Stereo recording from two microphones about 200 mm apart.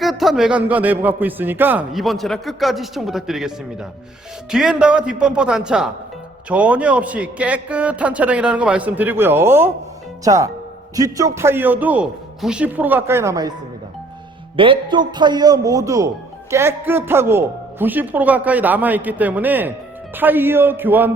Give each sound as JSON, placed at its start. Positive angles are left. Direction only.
{"t": 0.0, "sound": "a man's voice", "side_deg": 0}
{"t": 4.5, "sound": "a man's voice", "side_deg": -5}
{"t": 14.5, "sound": "speech", "side_deg": -25}